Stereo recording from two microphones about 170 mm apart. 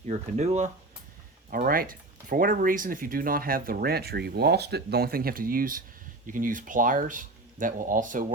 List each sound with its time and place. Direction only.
0.1 s speech: 40° right (ahead or behind)
1.5 s speech: 60° right (ahead or behind)